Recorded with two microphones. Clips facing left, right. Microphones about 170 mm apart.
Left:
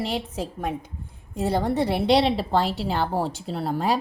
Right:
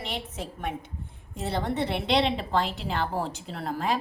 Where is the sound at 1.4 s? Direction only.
40° left (ahead or behind).